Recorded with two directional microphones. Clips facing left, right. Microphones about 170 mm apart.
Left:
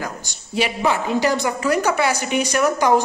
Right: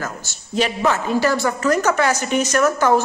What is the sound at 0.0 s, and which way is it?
A woman's voice, 15° left (ahead or behind).